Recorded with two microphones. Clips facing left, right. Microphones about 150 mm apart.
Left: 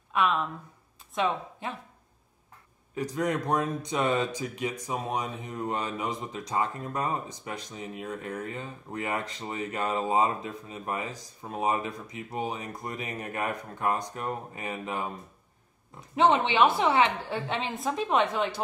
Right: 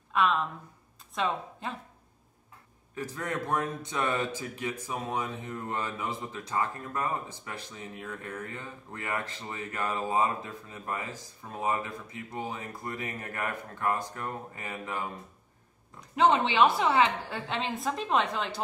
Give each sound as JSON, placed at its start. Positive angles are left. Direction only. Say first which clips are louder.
{"t": 0.1, "sound": "speech", "louder": "even", "side_deg": 0}
{"t": 2.9, "sound": "speech", "louder": "left 6 dB", "side_deg": 15}
{"t": 16.3, "sound": "speech", "louder": "left 1 dB", "side_deg": 25}
{"t": 16.8, "sound": "a woman's voice", "louder": "left 1 dB", "side_deg": 0}